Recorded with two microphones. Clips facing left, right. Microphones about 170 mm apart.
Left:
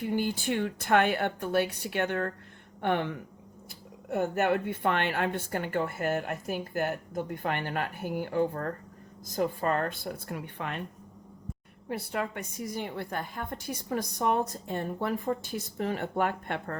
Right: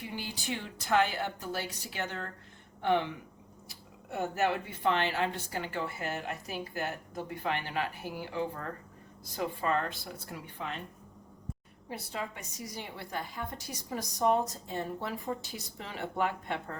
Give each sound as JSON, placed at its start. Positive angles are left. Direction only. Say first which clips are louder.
{"t": 0.0, "sound": "a woman's voice", "louder": "left 10 dB", "side_deg": 50}
{"t": 11.9, "sound": "a woman's voice", "louder": "left 6 dB", "side_deg": 60}